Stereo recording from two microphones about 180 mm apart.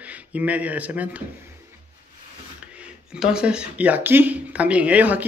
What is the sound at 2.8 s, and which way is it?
Speech, 5° right (ahead or behind).